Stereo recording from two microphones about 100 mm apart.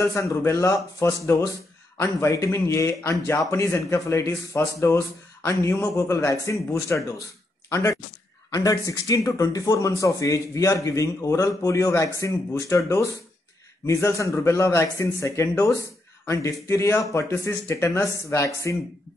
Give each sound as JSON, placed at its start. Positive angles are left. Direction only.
{"t": 0.0, "sound": "speech", "side_deg": 30}